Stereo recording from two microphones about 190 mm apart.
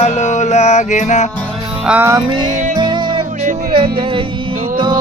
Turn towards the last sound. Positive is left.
turn(degrees=-25)  # may be behind; listen again after turning